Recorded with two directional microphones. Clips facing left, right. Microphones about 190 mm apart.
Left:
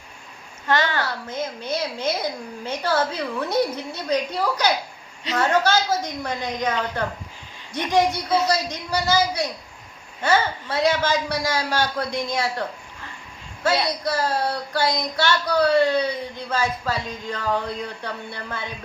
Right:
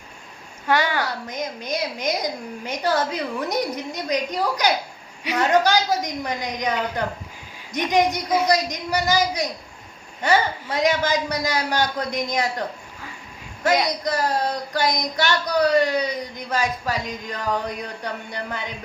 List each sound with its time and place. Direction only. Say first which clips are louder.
0.7 s speech: right 1 dB; 10° right (ahead or behind)
13.7 s speech: right 1 dB; 15° right (ahead or behind)